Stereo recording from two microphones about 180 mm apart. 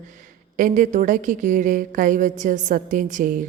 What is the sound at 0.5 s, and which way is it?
A woman's voice, 45° right (ahead or behind).